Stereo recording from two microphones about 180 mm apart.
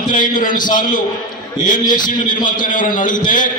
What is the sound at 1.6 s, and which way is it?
A man's voice, 50° left (ahead or behind).